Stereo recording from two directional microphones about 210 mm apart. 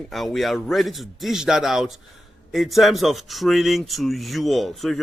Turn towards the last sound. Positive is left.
turn(degrees=0)  # may be behind; listen again after turning